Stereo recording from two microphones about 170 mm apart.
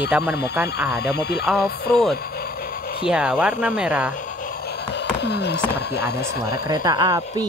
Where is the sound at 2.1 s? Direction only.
65° left (ahead or behind).